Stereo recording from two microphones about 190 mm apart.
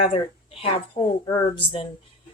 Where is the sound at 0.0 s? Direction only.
30° left (ahead or behind).